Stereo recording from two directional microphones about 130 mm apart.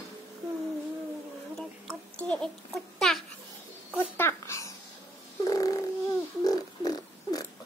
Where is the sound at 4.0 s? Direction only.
15° left (ahead or behind).